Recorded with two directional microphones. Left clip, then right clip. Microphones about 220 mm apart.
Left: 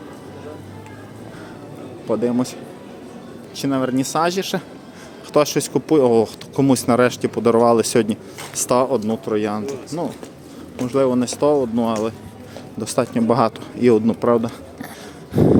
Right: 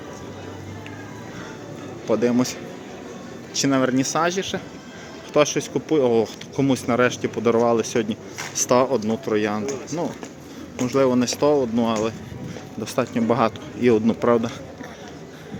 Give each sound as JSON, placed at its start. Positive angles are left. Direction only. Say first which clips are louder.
{"t": 2.0, "sound": "a man's voice", "louder": "even", "side_deg": 5}
{"t": 10.8, "sound": "a man's voice", "louder": "left 1 dB", "side_deg": 10}